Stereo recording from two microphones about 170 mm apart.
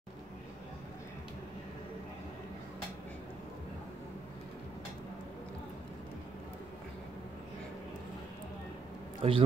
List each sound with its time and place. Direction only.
9.2 s a man's voice: 35° right (ahead or behind)